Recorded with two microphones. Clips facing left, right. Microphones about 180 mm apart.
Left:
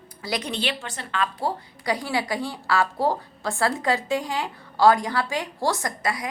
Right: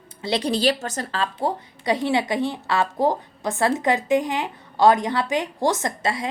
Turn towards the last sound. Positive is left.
turn(degrees=-25)  # may be behind; listen again after turning